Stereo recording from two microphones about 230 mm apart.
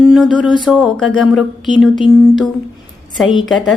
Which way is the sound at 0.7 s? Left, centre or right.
Centre.